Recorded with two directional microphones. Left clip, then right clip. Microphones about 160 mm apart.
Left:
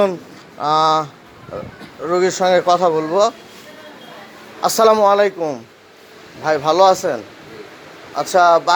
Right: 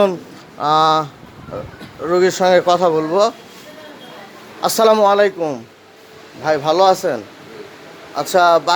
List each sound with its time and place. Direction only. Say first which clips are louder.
0.6 s speech: right 1 dB; 15° right (ahead or behind)
4.6 s speech: even; 10° right (ahead or behind)
6.4 s speech: left 1 dB; 10° right (ahead or behind)